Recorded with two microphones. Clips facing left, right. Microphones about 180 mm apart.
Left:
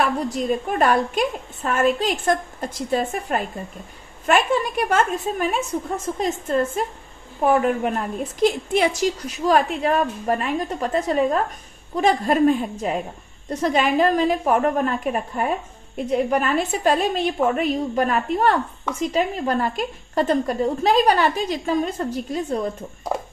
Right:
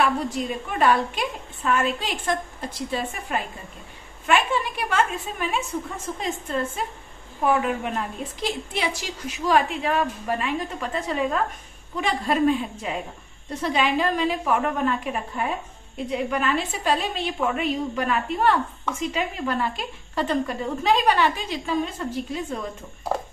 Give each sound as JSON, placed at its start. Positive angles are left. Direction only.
{"t": 0.0, "sound": "a woman's voice", "side_deg": 45}
{"t": 7.4, "sound": "a woman's voice", "side_deg": 45}